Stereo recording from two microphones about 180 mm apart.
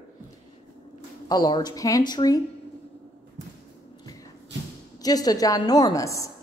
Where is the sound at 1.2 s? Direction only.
20° left (ahead or behind).